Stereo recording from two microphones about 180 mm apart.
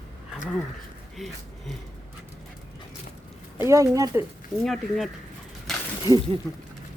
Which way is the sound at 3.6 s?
15° right (ahead or behind).